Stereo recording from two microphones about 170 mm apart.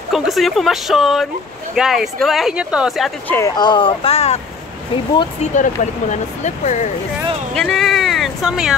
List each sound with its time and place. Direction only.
0.1 s speech: centre (ahead or behind)
3.3 s speech: 15° left (ahead or behind); by 4.4 s 35° left (ahead or behind)
5.4 s speech: 45° left (ahead or behind)
7.5 s speech: 5° left (ahead or behind)